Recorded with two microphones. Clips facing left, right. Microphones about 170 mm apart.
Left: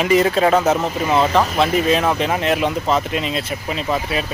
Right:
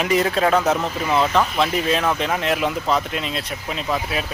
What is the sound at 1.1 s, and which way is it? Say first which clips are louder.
Speech: left 2 dB; 30° left (ahead or behind).